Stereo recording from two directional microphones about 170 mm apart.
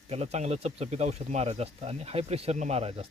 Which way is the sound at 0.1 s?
40° right (ahead or behind).